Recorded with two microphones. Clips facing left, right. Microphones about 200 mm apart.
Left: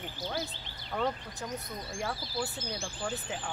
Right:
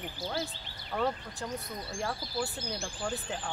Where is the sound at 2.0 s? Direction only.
Centre (ahead or behind).